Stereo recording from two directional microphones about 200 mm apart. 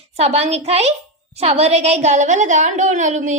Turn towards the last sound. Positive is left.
turn(degrees=-35)  # may be behind; listen again after turning